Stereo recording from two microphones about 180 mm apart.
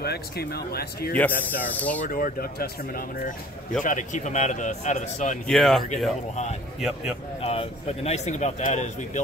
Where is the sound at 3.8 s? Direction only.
45° left (ahead or behind).